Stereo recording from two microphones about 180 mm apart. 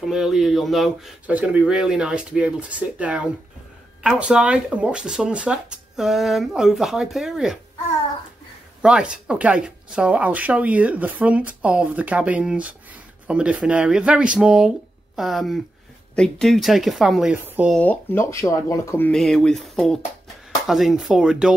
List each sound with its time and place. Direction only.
0.0 s speech: centre (ahead or behind)
8.8 s speech: 5° right (ahead or behind)
17.7 s speech: 10° left (ahead or behind)